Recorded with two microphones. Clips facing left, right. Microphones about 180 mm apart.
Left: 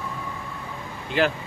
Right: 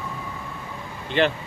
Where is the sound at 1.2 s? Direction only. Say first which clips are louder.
Right 1 dB; 5° left (ahead or behind).